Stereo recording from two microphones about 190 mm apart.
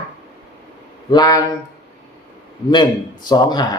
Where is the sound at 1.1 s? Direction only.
20° left (ahead or behind).